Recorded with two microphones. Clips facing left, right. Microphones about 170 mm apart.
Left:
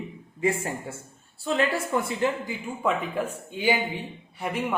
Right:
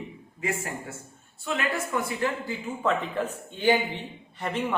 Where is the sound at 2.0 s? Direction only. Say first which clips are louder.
Left 2 dB; 20° left (ahead or behind).